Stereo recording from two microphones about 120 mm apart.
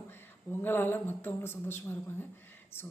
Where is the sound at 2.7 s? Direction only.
20° left (ahead or behind).